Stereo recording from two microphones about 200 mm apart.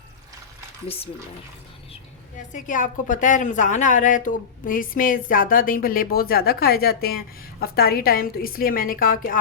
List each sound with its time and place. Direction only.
2.5 s a woman's voice: 40° left (ahead or behind)